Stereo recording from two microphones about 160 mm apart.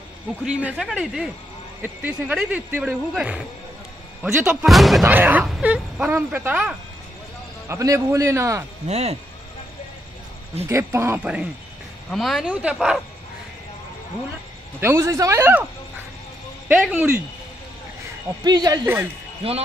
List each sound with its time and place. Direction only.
0.5 s speech: 5° right (ahead or behind)
5.0 s a man's voice: 10° right (ahead or behind)
8.8 s speech: 45° right (ahead or behind)
10.7 s speech: 15° right (ahead or behind)
12.1 s speech: centre (ahead or behind)
14.8 s speech: 20° right (ahead or behind)
16.6 s speech: 10° right (ahead or behind)
18.4 s a man's voice: 25° right (ahead or behind)